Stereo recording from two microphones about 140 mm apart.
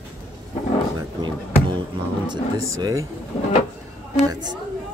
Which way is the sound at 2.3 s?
25° right (ahead or behind).